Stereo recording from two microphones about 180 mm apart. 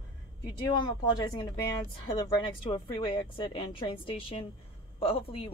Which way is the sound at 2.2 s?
25° left (ahead or behind).